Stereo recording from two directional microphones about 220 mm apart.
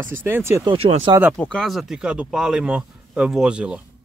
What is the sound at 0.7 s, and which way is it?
Speech, 25° right (ahead or behind).